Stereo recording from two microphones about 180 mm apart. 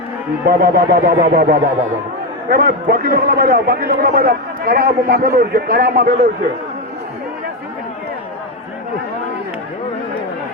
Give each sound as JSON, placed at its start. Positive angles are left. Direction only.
{"t": 0.4, "sound": "a man's voice", "side_deg": -60}